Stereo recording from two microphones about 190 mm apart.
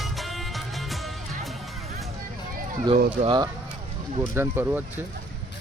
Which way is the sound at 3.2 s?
25° right (ahead or behind).